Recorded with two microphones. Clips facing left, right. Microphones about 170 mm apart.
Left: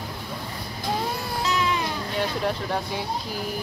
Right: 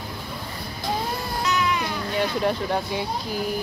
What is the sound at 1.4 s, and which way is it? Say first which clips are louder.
Baby cry: right 1 dB; 30° left (ahead or behind).